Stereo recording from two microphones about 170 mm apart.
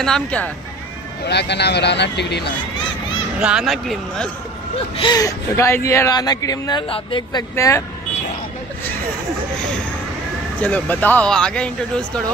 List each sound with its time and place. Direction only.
0.0 s speech: 5° left (ahead or behind)
1.2 s speech: 85° left
3.3 s speech: 5° right (ahead or behind)
4.9 s speech: 25° left (ahead or behind)
7.5 s speech: 15° left (ahead or behind)
10.6 s speech: 10° left (ahead or behind)